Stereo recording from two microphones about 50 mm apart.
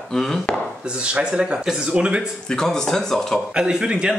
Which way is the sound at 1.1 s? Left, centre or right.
Right.